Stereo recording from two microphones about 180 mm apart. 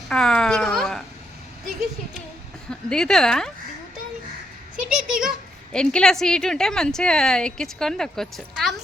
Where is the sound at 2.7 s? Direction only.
5° left (ahead or behind).